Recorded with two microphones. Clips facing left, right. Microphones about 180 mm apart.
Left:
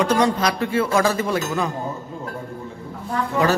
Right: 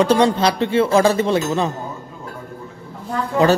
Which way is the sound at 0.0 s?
30° right (ahead or behind).